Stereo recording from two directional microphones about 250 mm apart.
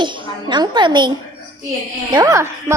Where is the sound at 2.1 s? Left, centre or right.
Centre.